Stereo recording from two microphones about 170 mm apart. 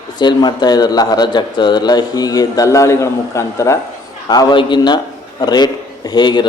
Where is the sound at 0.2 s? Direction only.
25° left (ahead or behind).